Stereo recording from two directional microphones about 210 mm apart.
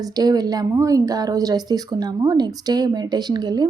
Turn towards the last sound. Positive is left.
turn(degrees=-20)  # may be behind; listen again after turning